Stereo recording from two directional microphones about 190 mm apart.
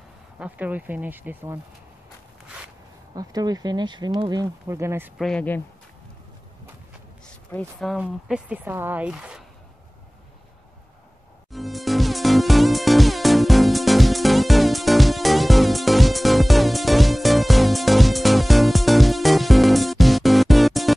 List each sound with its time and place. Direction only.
0.4 s speech: 10° right (ahead or behind)
3.2 s speech: 20° right (ahead or behind)
5.2 s speech: 5° left (ahead or behind)
7.2 s speech: 5° left (ahead or behind)
11.5 s music: centre (ahead or behind)